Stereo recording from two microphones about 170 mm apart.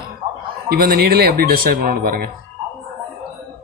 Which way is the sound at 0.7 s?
60° right (ahead or behind).